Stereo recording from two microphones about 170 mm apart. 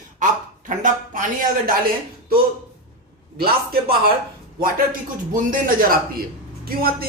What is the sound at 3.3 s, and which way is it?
Speech, 65° right (ahead or behind).